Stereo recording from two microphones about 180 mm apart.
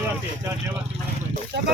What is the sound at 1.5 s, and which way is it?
Speech, 75° right (ahead or behind).